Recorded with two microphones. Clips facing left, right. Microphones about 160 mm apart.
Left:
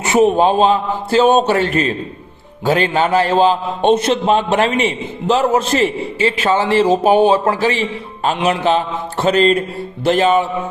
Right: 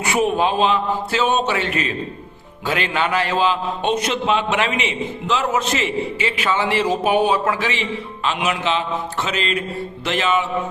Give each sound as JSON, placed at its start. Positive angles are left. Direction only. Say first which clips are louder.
{"t": 0.0, "sound": "a man's voice", "louder": "left 6 dB", "side_deg": 25}
{"t": 0.4, "sound": "a man's voice", "louder": "left 5 dB", "side_deg": 40}
{"t": 4.3, "sound": "a man's voice", "louder": "left 5 dB", "side_deg": 45}